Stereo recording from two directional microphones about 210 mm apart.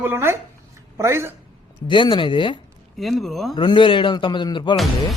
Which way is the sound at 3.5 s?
20° left (ahead or behind).